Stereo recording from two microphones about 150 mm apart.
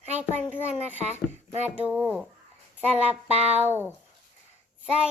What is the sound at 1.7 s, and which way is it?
Speech, 10° right (ahead or behind).